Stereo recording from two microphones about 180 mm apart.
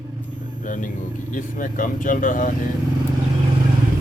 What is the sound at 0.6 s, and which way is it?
A man's voice, 50° left (ahead or behind).